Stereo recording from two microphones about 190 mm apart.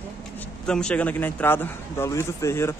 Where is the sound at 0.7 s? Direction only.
5° left (ahead or behind).